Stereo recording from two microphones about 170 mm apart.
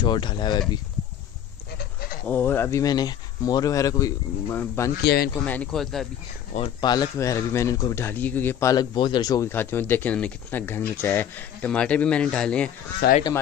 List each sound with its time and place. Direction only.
0.0 s speech: 25° left (ahead or behind)
1.8 s goat: 60° left (ahead or behind)
2.2 s speech: 10° left (ahead or behind)
5.0 s speech: 65° left (ahead or behind)
5.4 s speech: 5° left (ahead or behind)
6.5 s speech: 30° left (ahead or behind); by 12.7 s 5° left (ahead or behind)
13.0 s speech: 70° left (ahead or behind)